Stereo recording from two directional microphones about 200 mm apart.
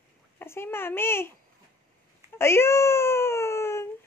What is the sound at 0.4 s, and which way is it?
Speech, 10° left (ahead or behind).